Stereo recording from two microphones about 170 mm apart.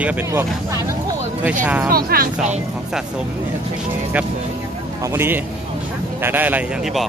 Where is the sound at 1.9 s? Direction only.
60° right (ahead or behind).